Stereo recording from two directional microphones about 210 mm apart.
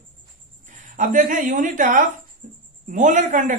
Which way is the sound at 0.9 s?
40° right (ahead or behind).